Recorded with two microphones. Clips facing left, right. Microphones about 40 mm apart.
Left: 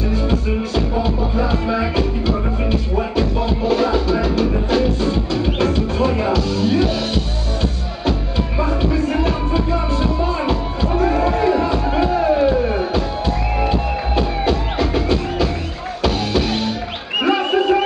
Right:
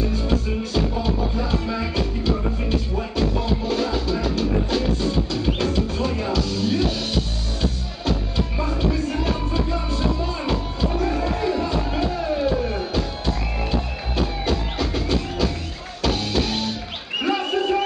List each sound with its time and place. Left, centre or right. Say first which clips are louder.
0.1 s music: left 4 dB; centre
8.5 s music: left 5 dB; centre
17.2 s bird: left 6 dB; left